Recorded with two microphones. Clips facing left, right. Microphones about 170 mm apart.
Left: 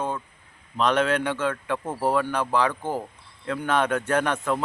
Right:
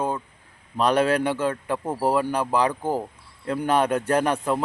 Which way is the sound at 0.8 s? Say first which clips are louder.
Right 2 dB; 35° right (ahead or behind).